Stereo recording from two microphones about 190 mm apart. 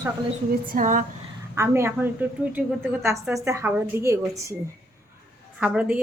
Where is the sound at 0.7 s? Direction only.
45° right (ahead or behind).